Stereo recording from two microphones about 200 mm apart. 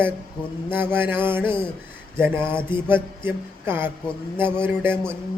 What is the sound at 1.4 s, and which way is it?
Speech, 25° left (ahead or behind).